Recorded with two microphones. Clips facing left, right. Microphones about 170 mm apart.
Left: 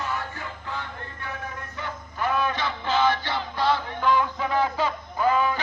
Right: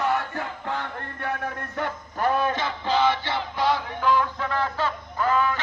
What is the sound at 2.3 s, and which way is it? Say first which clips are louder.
Music: right 2 dB; 40° right (ahead or behind).